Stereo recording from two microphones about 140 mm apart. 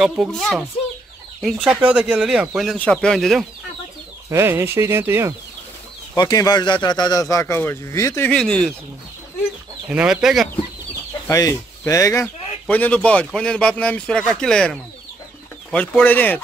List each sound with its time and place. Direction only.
0.0 s speech: 5° right (ahead or behind)
4.3 s speech: 15° right (ahead or behind)
6.1 s a man's voice: 30° left (ahead or behind)
8.3 s speech: 5° left (ahead or behind)
9.8 s speech: 5° right (ahead or behind)
11.2 s speech: 25° left (ahead or behind)
12.6 s speech: 10° left (ahead or behind)
16.0 s speech: 10° left (ahead or behind)